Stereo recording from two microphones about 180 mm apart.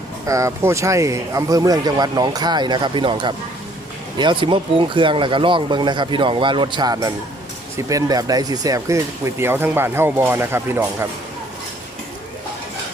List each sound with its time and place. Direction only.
0.3 s speech: 15° right (ahead or behind)